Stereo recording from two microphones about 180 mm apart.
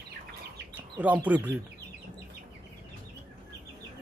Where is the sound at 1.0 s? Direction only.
10° right (ahead or behind).